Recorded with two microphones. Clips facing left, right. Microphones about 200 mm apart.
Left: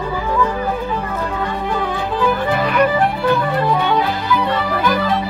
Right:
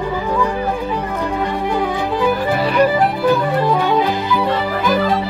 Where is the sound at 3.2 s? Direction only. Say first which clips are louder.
Right 2 dB; centre (ahead or behind).